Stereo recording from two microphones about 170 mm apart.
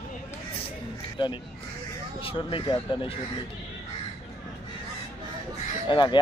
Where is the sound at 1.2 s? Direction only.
30° left (ahead or behind).